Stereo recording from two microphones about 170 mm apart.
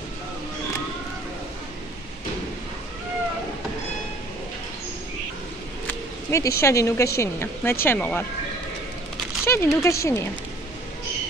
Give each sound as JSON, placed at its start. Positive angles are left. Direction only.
{"t": 5.9, "sound": "speech", "side_deg": 15}
{"t": 9.5, "sound": "speech", "side_deg": 15}